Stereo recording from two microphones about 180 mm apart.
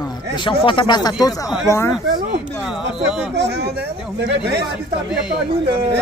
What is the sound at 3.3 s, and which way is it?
Speech, 70° right (ahead or behind).